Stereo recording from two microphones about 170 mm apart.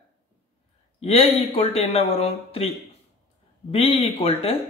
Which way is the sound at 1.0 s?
35° left (ahead or behind).